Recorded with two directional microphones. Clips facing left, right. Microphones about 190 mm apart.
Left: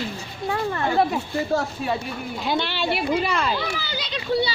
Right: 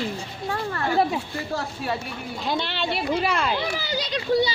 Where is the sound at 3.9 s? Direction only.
40° right (ahead or behind).